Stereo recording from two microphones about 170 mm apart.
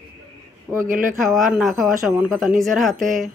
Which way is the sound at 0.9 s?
55° right (ahead or behind).